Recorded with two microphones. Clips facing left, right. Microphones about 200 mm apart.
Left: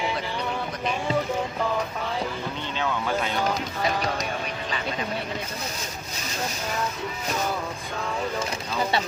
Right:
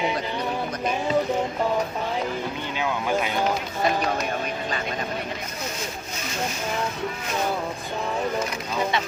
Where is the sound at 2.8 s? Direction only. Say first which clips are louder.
Right 2 dB; 15° right (ahead or behind).